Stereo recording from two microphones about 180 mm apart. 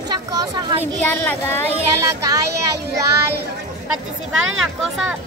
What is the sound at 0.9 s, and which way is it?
Speech, 10° left (ahead or behind).